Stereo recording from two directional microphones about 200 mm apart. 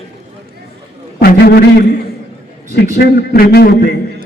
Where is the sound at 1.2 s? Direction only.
50° left (ahead or behind).